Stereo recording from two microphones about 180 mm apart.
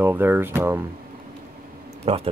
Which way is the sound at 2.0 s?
35° right (ahead or behind).